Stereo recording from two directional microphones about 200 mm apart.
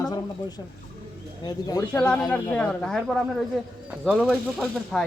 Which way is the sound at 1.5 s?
20° left (ahead or behind).